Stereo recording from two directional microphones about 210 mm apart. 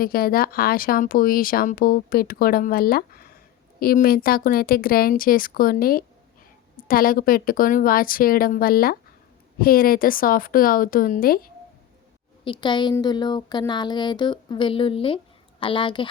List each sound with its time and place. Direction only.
0.0 s speech: 45° left (ahead or behind)
12.5 s a woman's voice: 20° left (ahead or behind)